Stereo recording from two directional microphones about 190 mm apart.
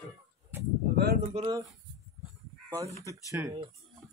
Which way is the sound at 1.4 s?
20° right (ahead or behind).